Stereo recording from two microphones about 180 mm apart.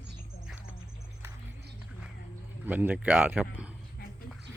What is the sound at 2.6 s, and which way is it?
Speech, 10° right (ahead or behind).